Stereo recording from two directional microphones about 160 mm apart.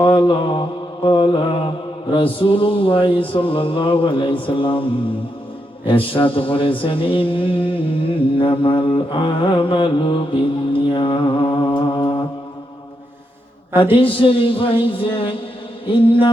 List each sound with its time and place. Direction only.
0.0 s mantra: 30° left (ahead or behind)
13.9 s mantra: 35° left (ahead or behind)